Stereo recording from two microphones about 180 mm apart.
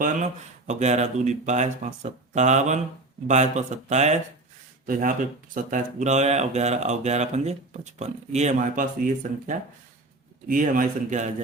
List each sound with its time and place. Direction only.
0.7 s speech: 40° right (ahead or behind)